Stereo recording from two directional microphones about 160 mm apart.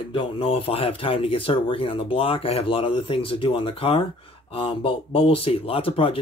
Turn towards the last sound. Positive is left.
turn(degrees=35)  # may be behind; listen again after turning